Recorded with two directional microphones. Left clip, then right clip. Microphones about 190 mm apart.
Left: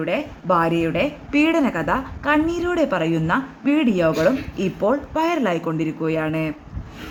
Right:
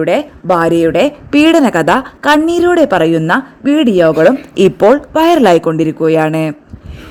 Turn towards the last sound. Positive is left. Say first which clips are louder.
# right 11 dB
turn(degrees=-50)  # may be behind; listen again after turning